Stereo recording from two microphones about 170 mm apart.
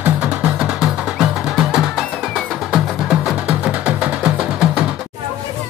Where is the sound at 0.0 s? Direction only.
10° right (ahead or behind).